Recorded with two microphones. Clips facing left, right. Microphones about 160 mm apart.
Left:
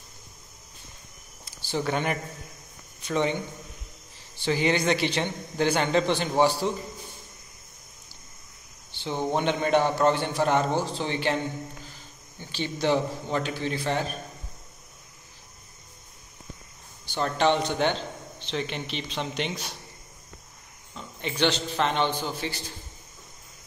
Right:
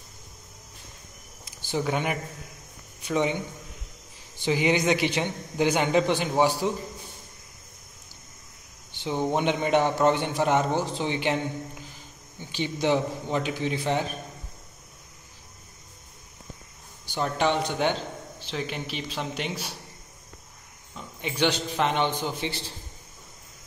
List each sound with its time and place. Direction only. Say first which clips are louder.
1.4 s a sound: right 1 dB; 15° right (ahead or behind)
3.1 s a man's voice: even; 10° right (ahead or behind)
4.4 s a man's voice: right 1 dB; 15° right (ahead or behind)
8.9 s a man's voice: right 1 dB; 10° right (ahead or behind)
17.0 s a man's voice: left 1 dB; 10° right (ahead or behind)
20.9 s a man's voice: even; 10° right (ahead or behind)